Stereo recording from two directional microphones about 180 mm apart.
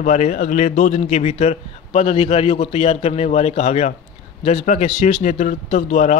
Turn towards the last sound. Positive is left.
turn(degrees=40)  # may be behind; listen again after turning